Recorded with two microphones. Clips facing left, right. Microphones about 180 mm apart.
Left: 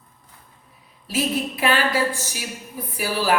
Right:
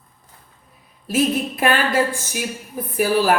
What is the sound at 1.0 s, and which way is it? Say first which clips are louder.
A woman's voice: right 4 dB; 50° right (ahead or behind).